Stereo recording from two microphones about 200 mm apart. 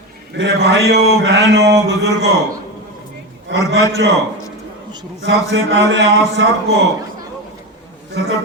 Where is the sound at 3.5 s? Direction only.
65° right (ahead or behind).